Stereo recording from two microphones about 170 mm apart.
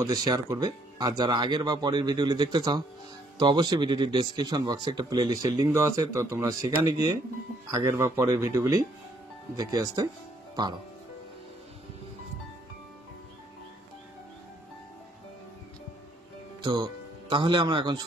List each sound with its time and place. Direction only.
0.0 s speech: 25° right (ahead or behind)
16.6 s speech: 25° right (ahead or behind)